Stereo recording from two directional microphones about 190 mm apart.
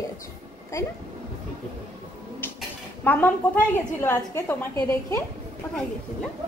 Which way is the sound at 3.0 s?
10° left (ahead or behind).